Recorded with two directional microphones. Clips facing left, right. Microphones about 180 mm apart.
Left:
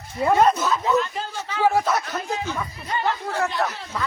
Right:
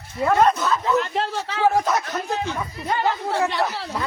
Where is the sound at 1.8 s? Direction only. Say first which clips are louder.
Right 1 dB; 10° right (ahead or behind).